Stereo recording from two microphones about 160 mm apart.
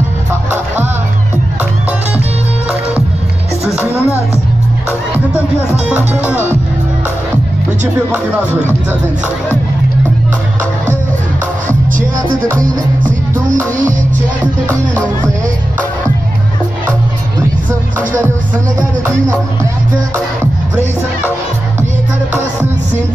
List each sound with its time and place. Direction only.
1.6 s music: 10° right (ahead or behind)
3.8 s music: 15° left (ahead or behind)
5.9 s music: 10° right (ahead or behind)
14.7 s music: 10° left (ahead or behind)